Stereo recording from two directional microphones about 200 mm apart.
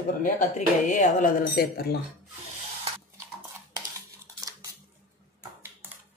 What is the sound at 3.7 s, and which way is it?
Dishes, 15° right (ahead or behind).